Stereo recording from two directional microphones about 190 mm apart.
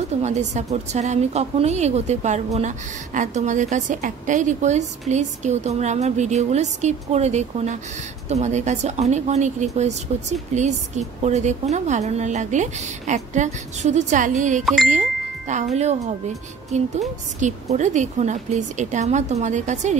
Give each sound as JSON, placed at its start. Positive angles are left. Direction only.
{"t": 0.2, "sound": "a woman's voice", "side_deg": -35}
{"t": 14.9, "sound": "ding", "side_deg": -40}
{"t": 16.7, "sound": "a woman's voice", "side_deg": -40}